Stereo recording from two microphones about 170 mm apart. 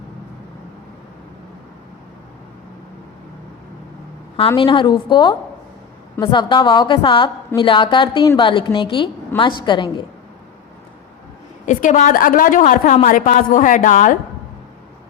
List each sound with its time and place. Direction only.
4.4 s a woman's voice: 30° left (ahead or behind)
11.6 s a woman's voice: 45° left (ahead or behind)